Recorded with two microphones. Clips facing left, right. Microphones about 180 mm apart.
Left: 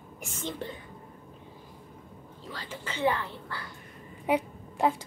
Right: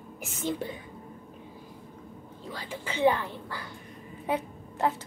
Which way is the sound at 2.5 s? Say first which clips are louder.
Right 2 dB; 10° right (ahead or behind).